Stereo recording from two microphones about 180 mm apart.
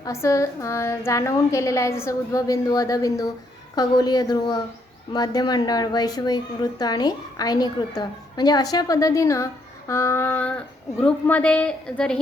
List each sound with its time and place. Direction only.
0.0 s a woman's voice: 15° left (ahead or behind)